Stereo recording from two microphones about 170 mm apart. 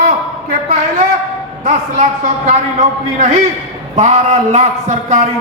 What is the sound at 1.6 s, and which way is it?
Speech, 45° right (ahead or behind).